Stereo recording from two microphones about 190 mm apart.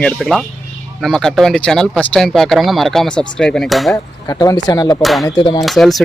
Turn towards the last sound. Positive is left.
turn(degrees=0)  # may be behind; listen again after turning